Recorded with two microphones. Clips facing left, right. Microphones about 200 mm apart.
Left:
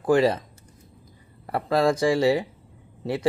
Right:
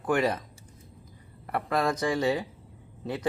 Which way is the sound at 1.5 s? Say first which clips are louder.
Left 6 dB; 30° left (ahead or behind).